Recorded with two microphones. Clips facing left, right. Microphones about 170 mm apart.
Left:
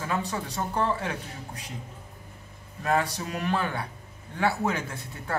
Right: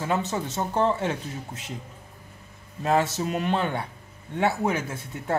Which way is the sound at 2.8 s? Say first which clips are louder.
Right 3 dB; 25° right (ahead or behind).